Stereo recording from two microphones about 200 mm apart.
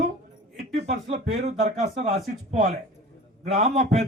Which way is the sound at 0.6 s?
55° right (ahead or behind).